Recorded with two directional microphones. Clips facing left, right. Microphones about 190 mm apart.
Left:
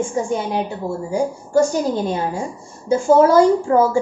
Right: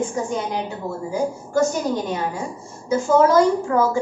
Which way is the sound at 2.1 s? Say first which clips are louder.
Left 3 dB; 30° left (ahead or behind).